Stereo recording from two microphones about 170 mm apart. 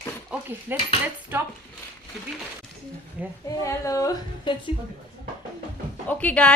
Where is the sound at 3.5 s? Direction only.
20° left (ahead or behind).